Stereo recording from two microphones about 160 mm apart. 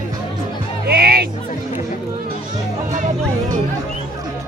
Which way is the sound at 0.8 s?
70° right (ahead or behind).